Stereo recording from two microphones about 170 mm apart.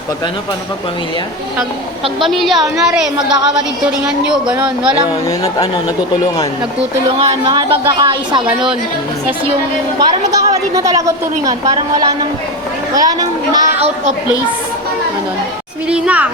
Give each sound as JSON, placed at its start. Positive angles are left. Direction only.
{"t": 2.2, "sound": "a woman's voice", "side_deg": 0}
{"t": 7.4, "sound": "a woman's voice", "side_deg": -25}
{"t": 10.0, "sound": "a woman's voice", "side_deg": -25}
{"t": 13.7, "sound": "a woman's voice", "side_deg": -40}
{"t": 15.9, "sound": "speech", "side_deg": -10}